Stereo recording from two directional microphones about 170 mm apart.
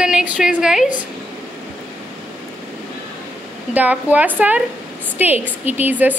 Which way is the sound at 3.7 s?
10° right (ahead or behind).